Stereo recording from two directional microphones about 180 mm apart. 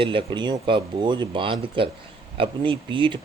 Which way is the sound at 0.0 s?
30° right (ahead or behind).